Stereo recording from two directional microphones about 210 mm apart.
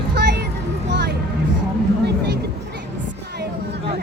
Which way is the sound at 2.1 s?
50° right (ahead or behind).